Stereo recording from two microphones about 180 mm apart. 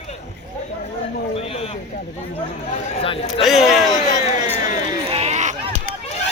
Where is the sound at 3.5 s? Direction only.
Centre (ahead or behind).